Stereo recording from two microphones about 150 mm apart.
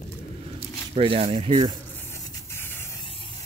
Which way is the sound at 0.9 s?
40° right (ahead or behind).